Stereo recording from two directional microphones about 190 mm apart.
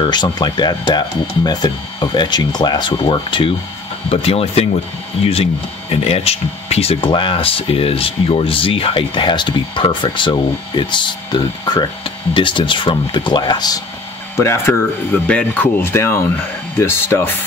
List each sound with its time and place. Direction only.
0.0 s speech: 25° left (ahead or behind)